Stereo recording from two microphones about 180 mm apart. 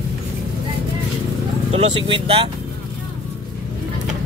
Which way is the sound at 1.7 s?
30° right (ahead or behind).